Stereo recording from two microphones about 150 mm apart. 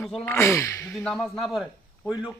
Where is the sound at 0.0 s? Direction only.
5° left (ahead or behind).